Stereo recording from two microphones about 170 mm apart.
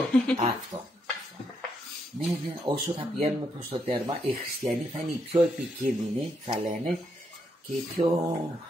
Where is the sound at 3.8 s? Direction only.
35° right (ahead or behind).